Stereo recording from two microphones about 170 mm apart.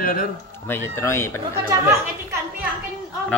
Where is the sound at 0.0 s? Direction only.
55° left (ahead or behind).